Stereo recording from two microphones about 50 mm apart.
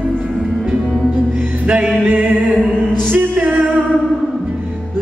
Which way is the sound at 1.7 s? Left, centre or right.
Right.